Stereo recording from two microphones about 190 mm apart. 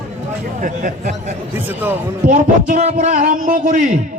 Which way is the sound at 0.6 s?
45° right (ahead or behind).